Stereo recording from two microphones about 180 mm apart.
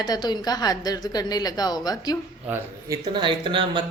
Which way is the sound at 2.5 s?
20° right (ahead or behind).